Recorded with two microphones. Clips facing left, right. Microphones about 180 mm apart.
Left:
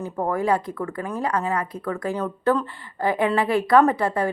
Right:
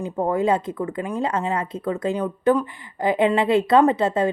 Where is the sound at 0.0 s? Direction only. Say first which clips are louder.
Right 3 dB; 20° right (ahead or behind).